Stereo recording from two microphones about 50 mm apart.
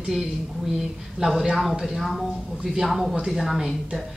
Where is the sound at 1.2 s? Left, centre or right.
Centre.